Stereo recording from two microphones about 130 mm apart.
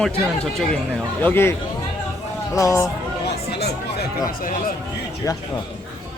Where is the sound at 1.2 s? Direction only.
20° left (ahead or behind).